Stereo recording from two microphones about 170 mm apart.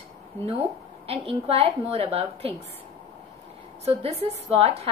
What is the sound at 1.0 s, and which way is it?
A woman's voice, 35° right (ahead or behind).